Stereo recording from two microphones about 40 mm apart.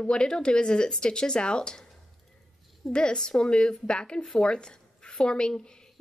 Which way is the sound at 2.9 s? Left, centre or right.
Left.